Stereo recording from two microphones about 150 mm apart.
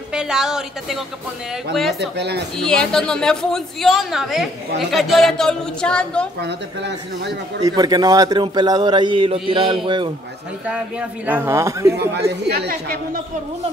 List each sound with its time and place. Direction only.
0.1 s a woman's voice: 5° right (ahead or behind)
7.6 s a man's voice: 25° right (ahead or behind)
10.7 s speech: 10° right (ahead or behind)
12.4 s a woman's voice: 85° right